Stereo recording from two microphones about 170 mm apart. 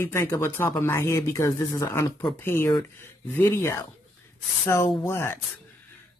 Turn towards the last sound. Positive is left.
turn(degrees=15)  # may be behind; listen again after turning